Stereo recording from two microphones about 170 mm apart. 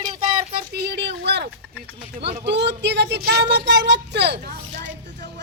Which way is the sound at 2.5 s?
90° right.